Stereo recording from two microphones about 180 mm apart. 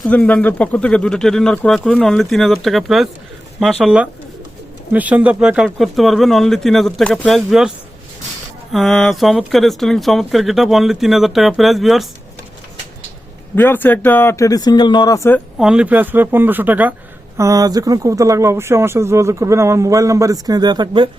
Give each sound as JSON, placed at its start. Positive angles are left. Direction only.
{"t": 0.0, "sound": "speech", "side_deg": 5}
{"t": 8.7, "sound": "speech", "side_deg": 0}
{"t": 13.7, "sound": "speech", "side_deg": 10}
{"t": 15.5, "sound": "speech", "side_deg": -5}